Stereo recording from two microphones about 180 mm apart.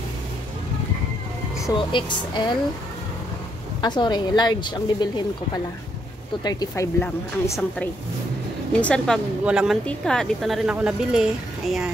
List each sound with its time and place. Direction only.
1.6 s a woman's voice: 25° left (ahead or behind)
3.8 s a woman's voice: 25° left (ahead or behind); by 11.9 s centre (ahead or behind)